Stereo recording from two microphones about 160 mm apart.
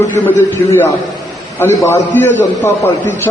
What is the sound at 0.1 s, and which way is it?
A man's voice, 15° left (ahead or behind).